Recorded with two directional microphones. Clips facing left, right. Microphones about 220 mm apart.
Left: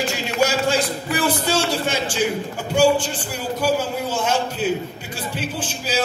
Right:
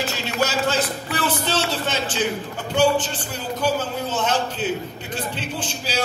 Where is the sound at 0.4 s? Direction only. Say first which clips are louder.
Left 3 dB; 10° left (ahead or behind).